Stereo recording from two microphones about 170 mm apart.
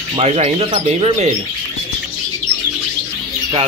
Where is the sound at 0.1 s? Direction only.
35° right (ahead or behind).